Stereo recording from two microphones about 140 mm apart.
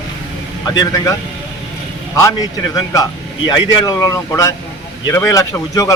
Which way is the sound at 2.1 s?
25° left (ahead or behind).